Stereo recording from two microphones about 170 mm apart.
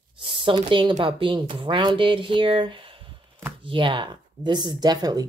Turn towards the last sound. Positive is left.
turn(degrees=-25)  # may be behind; listen again after turning